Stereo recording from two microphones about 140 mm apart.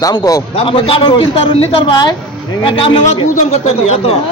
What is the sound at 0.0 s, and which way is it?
Speech, 25° left (ahead or behind).